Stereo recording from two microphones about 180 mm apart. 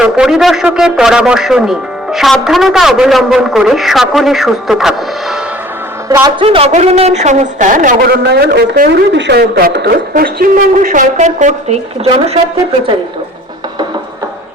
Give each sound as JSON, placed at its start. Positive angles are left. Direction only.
{"t": 0.0, "sound": "a man's voice", "side_deg": -5}
{"t": 6.1, "sound": "a man's voice", "side_deg": -20}
{"t": 6.4, "sound": "a woman's voice", "side_deg": -30}
{"t": 9.1, "sound": "a woman's voice", "side_deg": -70}